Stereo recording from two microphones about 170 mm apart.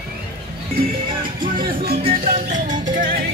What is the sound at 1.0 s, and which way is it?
Music, 30° right (ahead or behind).